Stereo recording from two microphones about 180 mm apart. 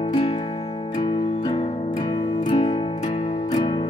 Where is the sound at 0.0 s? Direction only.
30° left (ahead or behind).